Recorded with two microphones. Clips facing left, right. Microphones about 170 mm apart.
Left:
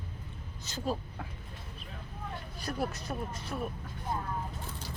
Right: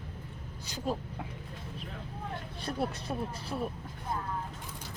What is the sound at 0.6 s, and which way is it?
Speech, 15° right (ahead or behind).